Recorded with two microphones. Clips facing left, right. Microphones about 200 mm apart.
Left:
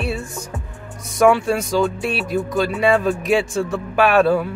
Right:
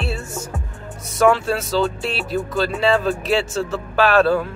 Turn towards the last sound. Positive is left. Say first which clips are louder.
# left 1 dB
turn(degrees=15)  # may be behind; listen again after turning